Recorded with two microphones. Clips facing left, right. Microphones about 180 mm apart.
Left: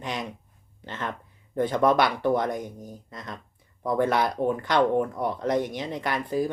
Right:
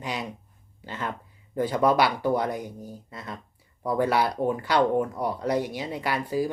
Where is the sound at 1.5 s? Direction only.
10° right (ahead or behind).